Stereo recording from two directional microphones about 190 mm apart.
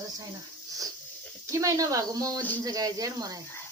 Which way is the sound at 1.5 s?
15° right (ahead or behind).